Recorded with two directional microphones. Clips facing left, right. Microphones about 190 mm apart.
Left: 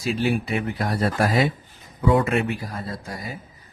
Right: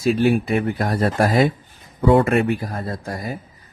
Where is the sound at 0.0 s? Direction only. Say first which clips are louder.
Right 6 dB; 50° right (ahead or behind).